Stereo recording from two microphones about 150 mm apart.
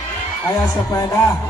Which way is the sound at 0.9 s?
25° left (ahead or behind).